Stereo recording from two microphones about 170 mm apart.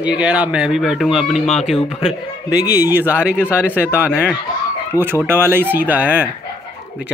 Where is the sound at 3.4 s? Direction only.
10° left (ahead or behind).